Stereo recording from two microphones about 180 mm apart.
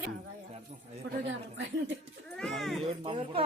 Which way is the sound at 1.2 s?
85° right.